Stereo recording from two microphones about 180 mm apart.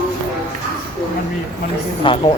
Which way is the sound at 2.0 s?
25° left (ahead or behind).